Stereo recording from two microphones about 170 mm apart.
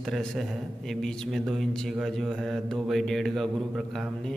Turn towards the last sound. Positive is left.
turn(degrees=0)  # may be behind; listen again after turning